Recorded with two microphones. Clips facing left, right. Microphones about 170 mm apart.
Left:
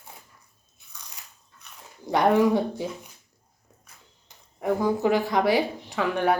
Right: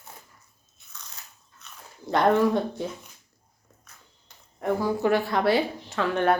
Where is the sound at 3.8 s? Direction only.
10° left (ahead or behind).